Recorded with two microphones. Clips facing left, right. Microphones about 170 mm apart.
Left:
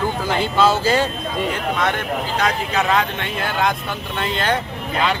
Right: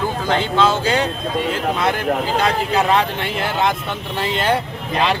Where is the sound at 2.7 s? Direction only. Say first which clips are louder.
Right 2 dB; 30° right (ahead or behind).